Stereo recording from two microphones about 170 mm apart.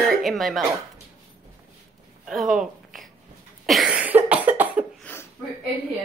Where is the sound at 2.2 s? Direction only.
Centre (ahead or behind).